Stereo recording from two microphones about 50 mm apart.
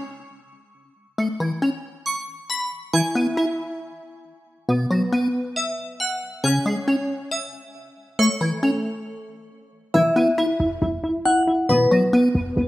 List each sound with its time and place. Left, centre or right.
1.1 s music: centre
4.6 s music: centre
7.0 s music: centre
8.2 s music: centre
9.9 s music: centre